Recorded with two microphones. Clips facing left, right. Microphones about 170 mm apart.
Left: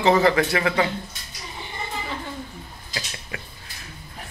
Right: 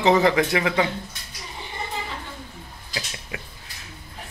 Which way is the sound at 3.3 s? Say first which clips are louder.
Right 1 dB; 20° right (ahead or behind).